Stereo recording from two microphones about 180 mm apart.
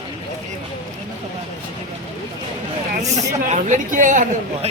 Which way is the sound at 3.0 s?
40° right (ahead or behind).